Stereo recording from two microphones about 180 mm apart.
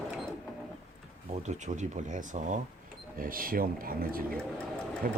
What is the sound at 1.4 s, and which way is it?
Speech, 40° right (ahead or behind).